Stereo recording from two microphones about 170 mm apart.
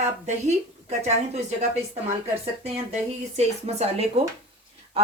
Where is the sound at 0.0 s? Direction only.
40° right (ahead or behind).